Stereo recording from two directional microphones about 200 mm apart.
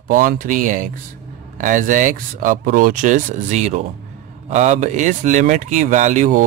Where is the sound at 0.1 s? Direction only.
45° right (ahead or behind).